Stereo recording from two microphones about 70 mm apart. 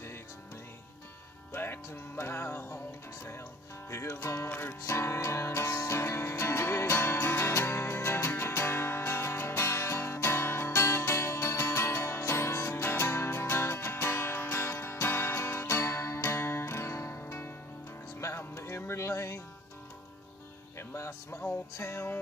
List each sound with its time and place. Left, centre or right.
1.5 s music: left
3.9 s music: left
4.5 s music: left
4.8 s music: left
17.2 s music: left
20.9 s music: left